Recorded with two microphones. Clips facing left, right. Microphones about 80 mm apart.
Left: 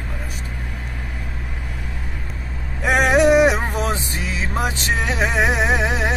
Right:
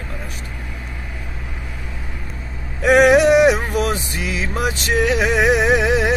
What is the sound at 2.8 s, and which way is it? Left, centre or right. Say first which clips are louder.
Music: right 4 dB; left.